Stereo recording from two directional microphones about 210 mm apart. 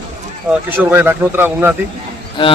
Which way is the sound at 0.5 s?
10° right (ahead or behind).